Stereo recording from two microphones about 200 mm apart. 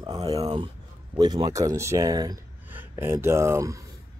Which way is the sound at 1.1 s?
20° right (ahead or behind).